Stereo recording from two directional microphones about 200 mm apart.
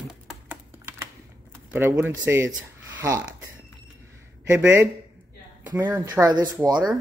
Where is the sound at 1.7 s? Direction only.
10° right (ahead or behind).